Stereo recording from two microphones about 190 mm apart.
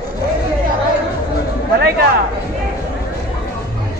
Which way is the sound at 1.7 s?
55° right (ahead or behind).